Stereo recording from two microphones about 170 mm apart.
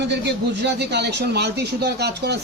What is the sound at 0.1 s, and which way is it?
A man's voice, 90° right.